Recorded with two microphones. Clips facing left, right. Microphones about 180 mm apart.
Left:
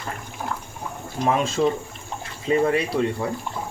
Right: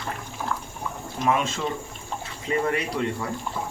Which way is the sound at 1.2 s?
35° left (ahead or behind).